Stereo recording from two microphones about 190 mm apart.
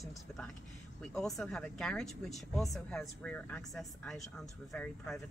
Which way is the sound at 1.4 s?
5° left (ahead or behind).